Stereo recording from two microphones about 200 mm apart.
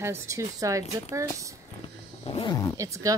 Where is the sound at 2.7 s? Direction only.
15° right (ahead or behind).